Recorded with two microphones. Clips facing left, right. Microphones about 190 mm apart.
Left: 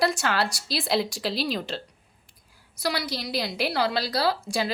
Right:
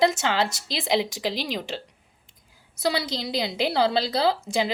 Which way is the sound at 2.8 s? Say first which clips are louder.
Right 3 dB; 25° right (ahead or behind).